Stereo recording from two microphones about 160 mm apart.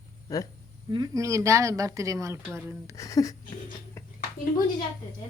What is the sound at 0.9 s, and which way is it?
Speech, 25° right (ahead or behind).